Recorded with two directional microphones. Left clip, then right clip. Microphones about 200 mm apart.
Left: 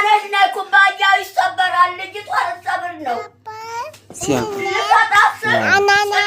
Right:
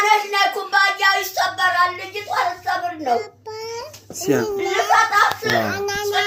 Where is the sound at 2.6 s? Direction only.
60° left (ahead or behind).